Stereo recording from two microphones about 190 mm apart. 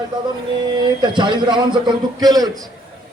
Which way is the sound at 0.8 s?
25° right (ahead or behind).